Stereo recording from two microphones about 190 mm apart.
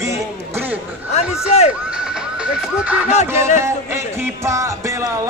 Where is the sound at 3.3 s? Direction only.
15° right (ahead or behind).